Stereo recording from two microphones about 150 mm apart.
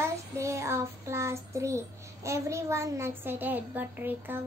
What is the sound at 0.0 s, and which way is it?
Child singing, 20° right (ahead or behind).